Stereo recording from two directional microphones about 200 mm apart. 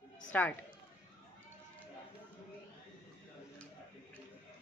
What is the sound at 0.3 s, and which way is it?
Speech, 10° left (ahead or behind).